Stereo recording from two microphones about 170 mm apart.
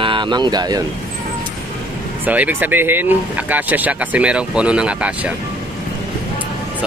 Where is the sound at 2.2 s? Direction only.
10° right (ahead or behind).